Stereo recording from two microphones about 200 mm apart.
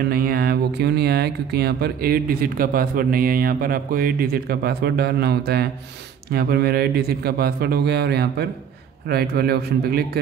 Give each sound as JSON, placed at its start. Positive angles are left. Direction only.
{"t": 0.1, "sound": "speech", "side_deg": -50}